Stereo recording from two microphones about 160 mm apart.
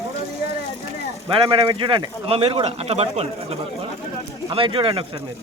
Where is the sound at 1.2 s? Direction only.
35° right (ahead or behind).